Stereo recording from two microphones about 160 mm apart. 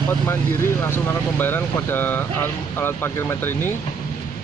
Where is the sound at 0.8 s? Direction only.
15° left (ahead or behind).